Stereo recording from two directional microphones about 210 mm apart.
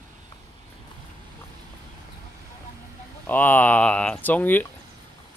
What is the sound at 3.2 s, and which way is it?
Speech, 10° left (ahead or behind).